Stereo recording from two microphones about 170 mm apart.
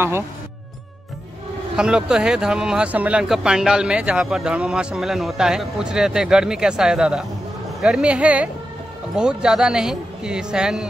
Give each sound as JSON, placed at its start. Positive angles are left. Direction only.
{"t": 1.8, "sound": "speech", "side_deg": -5}